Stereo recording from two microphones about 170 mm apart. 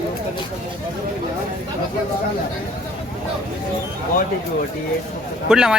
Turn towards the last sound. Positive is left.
turn(degrees=-5)  # may be behind; listen again after turning